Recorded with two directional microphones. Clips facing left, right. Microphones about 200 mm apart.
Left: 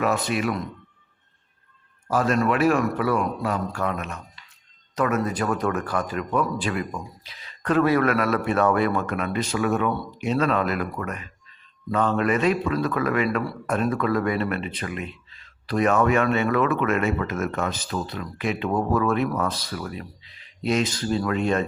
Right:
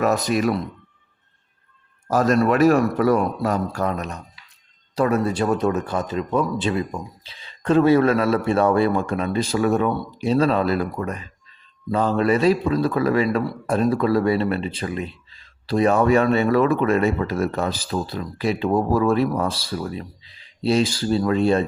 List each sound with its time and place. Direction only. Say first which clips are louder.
0.0 s a man's voice: right 4 dB; 40° right (ahead or behind)
2.0 s a man's voice: right 4 dB; 40° right (ahead or behind)